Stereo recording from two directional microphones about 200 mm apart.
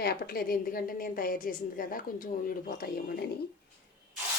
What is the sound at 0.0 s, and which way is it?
A woman's voice, 50° left (ahead or behind).